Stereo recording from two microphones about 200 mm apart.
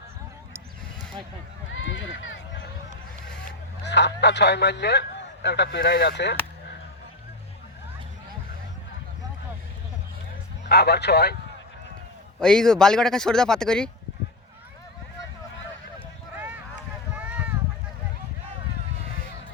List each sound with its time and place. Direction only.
1.7 s run: 70° left (ahead or behind)
3.8 s speech: 60° left (ahead or behind)
10.7 s speech: 55° left (ahead or behind)
12.4 s a man's voice: 5° left (ahead or behind)
17.2 s a sound: 5° right (ahead or behind)